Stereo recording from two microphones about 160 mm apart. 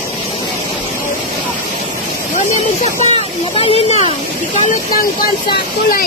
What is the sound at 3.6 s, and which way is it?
Speech, 40° left (ahead or behind).